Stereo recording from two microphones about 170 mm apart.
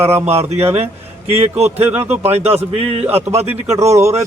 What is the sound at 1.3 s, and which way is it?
Speech, 35° right (ahead or behind).